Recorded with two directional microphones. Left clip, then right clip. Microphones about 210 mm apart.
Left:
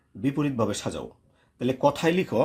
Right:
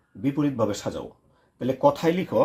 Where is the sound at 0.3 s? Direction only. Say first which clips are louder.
Right 2 dB; 35° left (ahead or behind).